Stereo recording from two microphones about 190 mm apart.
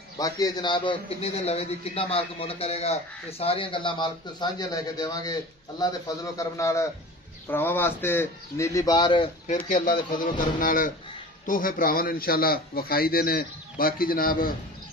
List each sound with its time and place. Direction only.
0.2 s a man's voice: 20° left (ahead or behind)
9.8 s a man's voice: 45° left (ahead or behind)